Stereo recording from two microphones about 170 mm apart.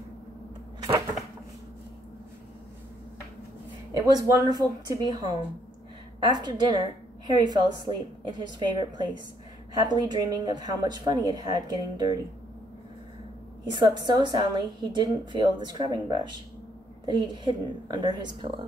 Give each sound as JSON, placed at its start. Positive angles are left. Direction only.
{"t": 3.9, "sound": "a woman's voice", "side_deg": -20}
{"t": 13.7, "sound": "a woman's voice", "side_deg": -25}